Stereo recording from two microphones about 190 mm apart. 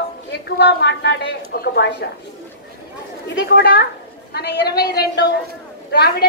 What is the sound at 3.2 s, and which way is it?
A woman's voice, 65° left (ahead or behind).